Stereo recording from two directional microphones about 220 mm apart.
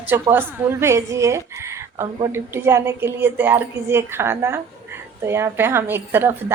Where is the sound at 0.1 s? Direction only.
10° right (ahead or behind).